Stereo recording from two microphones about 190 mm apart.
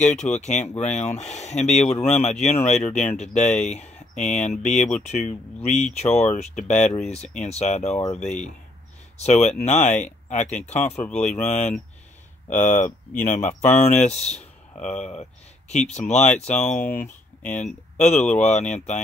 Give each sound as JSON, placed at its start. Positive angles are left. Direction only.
{"t": 0.0, "sound": "speech", "side_deg": 40}
{"t": 10.8, "sound": "speech", "side_deg": 10}
{"t": 11.4, "sound": "speech", "side_deg": 35}
{"t": 17.5, "sound": "speech", "side_deg": 10}
{"t": 17.9, "sound": "speech", "side_deg": 35}